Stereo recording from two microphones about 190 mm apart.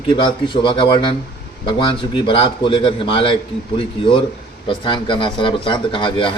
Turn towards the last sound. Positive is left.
turn(degrees=25)  # may be behind; listen again after turning